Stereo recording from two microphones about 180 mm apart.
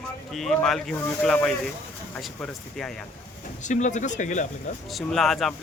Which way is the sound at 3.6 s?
40° left (ahead or behind).